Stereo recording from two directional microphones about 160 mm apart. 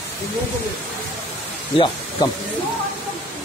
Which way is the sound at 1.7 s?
30° left (ahead or behind).